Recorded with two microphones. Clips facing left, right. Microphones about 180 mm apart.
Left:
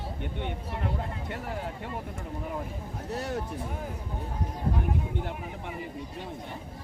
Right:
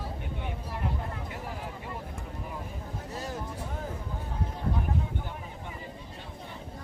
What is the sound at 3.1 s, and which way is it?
Speech, 70° left (ahead or behind).